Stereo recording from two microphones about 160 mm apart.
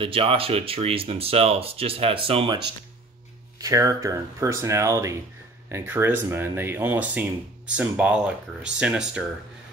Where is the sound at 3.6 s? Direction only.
20° right (ahead or behind).